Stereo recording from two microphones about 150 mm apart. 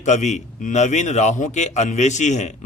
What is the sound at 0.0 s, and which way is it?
A man's voice, 50° left (ahead or behind).